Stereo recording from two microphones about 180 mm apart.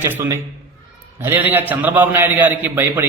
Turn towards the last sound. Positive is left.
turn(degrees=-10)  # may be behind; listen again after turning